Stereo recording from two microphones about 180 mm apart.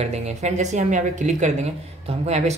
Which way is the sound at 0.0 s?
40° right (ahead or behind).